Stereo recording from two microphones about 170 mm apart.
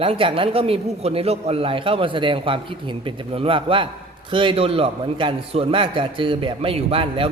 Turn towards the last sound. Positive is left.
turn(degrees=-35)  # may be behind; listen again after turning